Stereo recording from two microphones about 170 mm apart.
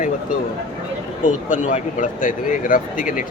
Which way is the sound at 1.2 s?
50° left (ahead or behind).